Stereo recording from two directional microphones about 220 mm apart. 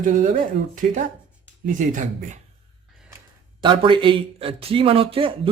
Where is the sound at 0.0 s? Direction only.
35° right (ahead or behind).